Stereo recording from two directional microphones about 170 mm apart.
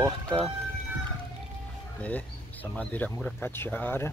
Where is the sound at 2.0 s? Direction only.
10° left (ahead or behind).